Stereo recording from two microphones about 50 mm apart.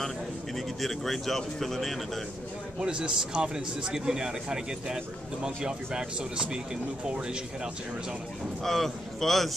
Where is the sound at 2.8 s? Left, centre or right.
Centre.